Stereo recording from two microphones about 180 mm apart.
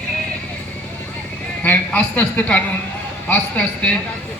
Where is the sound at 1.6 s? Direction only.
10° left (ahead or behind).